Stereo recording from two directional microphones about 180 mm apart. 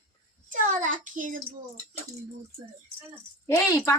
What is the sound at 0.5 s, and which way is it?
Child singing, 45° right (ahead or behind).